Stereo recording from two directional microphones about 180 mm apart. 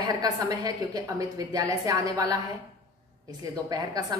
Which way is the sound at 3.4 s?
20° right (ahead or behind).